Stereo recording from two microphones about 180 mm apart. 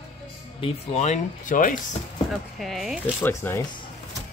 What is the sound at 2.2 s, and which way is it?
Speech, centre (ahead or behind).